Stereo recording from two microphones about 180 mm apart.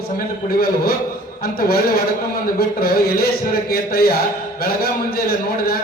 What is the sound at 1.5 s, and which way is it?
A man's voice, 55° left (ahead or behind).